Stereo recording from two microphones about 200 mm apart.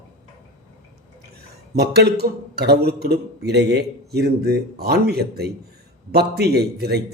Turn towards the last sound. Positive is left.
turn(degrees=-55)  # may be behind; listen again after turning